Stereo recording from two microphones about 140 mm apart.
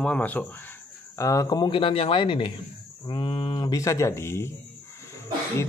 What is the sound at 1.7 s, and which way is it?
A man's voice, 40° left (ahead or behind).